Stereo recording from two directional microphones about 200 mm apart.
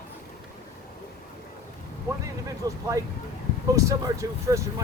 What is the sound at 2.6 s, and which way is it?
Speech, 15° right (ahead or behind).